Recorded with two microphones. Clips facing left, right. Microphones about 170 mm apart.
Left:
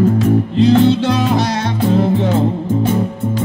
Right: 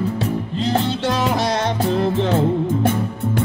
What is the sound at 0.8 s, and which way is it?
Music, 60° left (ahead or behind).